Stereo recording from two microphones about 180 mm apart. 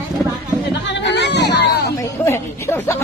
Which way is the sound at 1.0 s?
75° left (ahead or behind).